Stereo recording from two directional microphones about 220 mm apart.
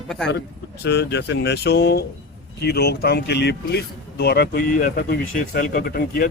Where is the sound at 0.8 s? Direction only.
50° left (ahead or behind).